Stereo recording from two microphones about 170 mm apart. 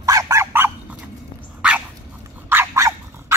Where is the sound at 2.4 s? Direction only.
15° right (ahead or behind).